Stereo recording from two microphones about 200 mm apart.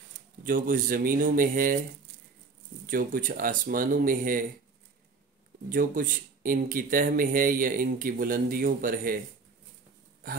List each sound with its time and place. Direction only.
0.4 s speech: 45° right (ahead or behind)
2.9 s speech: 45° right (ahead or behind)
5.7 s speech: 45° right (ahead or behind)